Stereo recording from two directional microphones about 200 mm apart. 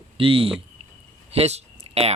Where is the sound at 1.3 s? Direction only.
30° right (ahead or behind).